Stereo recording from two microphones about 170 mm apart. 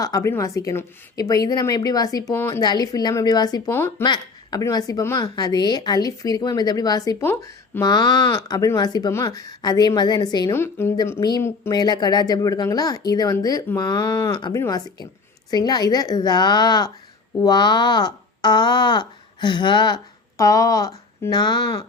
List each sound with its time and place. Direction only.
0.0 s a woman's voice: 20° left (ahead or behind)
4.0 s a woman's voice: 25° left (ahead or behind)
14.1 s a woman's voice: 15° left (ahead or behind)